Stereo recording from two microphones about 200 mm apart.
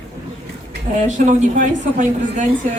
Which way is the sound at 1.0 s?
35° right (ahead or behind).